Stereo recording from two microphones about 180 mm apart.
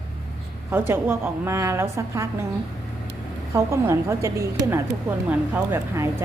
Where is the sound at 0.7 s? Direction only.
15° right (ahead or behind).